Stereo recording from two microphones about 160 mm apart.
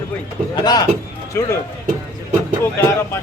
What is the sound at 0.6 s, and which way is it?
Speech, 25° left (ahead or behind).